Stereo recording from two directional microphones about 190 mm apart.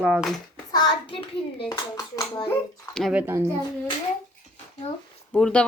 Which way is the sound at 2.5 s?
5° left (ahead or behind).